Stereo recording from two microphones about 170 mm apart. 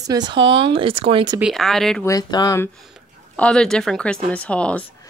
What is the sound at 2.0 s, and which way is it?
Speech, 20° left (ahead or behind).